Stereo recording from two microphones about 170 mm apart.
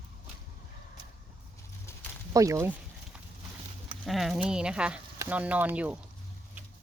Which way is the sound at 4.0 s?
Centre (ahead or behind).